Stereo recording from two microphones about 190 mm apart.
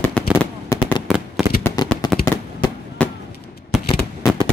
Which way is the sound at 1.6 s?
20° left (ahead or behind).